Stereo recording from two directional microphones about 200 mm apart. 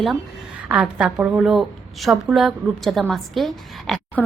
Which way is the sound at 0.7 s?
5° right (ahead or behind).